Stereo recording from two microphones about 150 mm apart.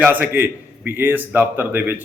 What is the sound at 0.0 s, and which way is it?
Speech, 10° right (ahead or behind).